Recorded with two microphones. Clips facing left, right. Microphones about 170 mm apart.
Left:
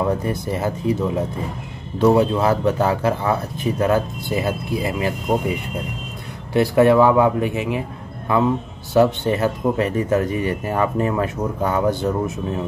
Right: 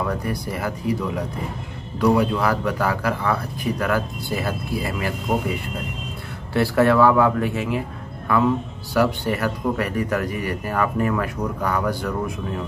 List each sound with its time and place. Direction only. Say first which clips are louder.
0.0 s speech: left 4 dB; 25° left (ahead or behind)
6.5 s speech: left 3 dB; 20° left (ahead or behind)